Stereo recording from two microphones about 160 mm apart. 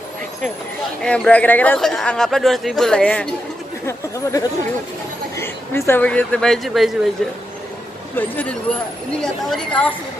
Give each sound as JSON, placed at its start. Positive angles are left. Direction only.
{"t": 1.0, "sound": "speech", "side_deg": 5}
{"t": 3.8, "sound": "a woman's voice", "side_deg": 20}